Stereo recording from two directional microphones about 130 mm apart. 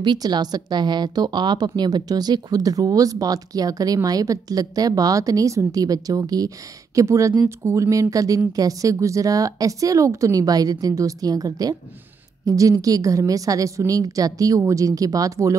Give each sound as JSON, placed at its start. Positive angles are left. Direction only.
{"t": 0.0, "sound": "speech", "side_deg": -35}